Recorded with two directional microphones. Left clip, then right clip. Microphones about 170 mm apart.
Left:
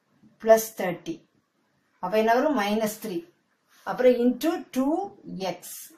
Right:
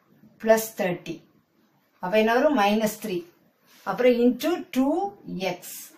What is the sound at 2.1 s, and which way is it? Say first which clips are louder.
Speech: right 1 dB; 15° right (ahead or behind).